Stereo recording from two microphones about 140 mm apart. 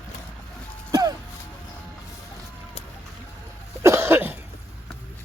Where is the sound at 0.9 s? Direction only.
25° right (ahead or behind).